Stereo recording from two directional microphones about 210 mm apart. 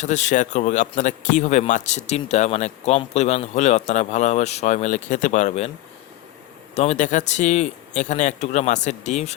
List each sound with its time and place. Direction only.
0.0 s speech: 35° left (ahead or behind)
6.7 s speech: 35° left (ahead or behind)